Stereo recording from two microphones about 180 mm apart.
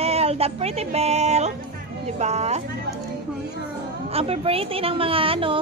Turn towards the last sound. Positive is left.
turn(degrees=-30)  # may be behind; listen again after turning